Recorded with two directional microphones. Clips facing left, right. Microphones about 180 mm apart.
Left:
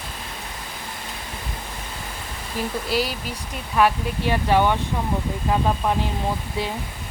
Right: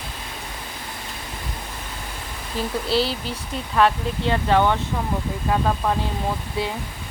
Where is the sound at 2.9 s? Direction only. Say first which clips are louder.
Right 4 dB; 10° left (ahead or behind).